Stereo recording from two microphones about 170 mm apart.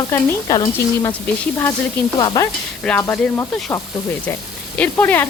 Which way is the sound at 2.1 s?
25° left (ahead or behind).